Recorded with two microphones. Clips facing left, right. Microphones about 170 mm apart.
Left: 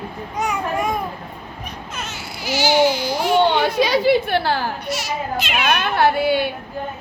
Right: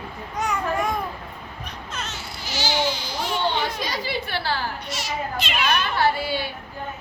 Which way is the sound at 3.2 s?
65° left (ahead or behind).